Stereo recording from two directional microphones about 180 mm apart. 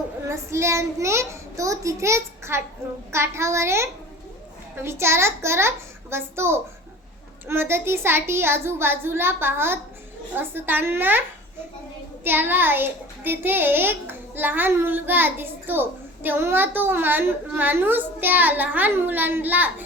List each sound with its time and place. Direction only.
0.3 s a child's voice: 15° right (ahead or behind)
12.2 s a child's voice: 10° right (ahead or behind)